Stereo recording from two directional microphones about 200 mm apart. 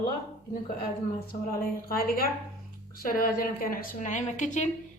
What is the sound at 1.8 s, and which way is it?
A woman's voice, 50° left (ahead or behind).